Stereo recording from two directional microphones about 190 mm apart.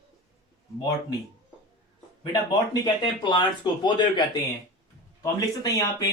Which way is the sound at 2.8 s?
25° left (ahead or behind).